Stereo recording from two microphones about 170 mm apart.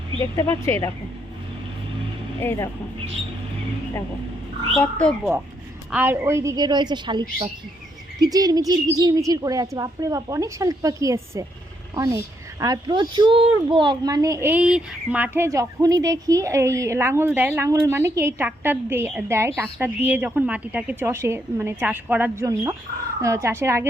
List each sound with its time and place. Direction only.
0.2 s speech: 15° left (ahead or behind)
2.4 s speech: 15° left (ahead or behind)
4.8 s speech: 5° left (ahead or behind)
5.9 s a child's voice: 10° right (ahead or behind)